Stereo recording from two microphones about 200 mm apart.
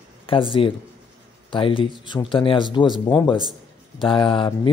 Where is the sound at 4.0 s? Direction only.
25° left (ahead or behind).